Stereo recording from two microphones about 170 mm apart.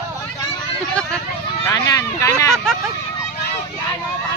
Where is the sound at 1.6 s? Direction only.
20° left (ahead or behind).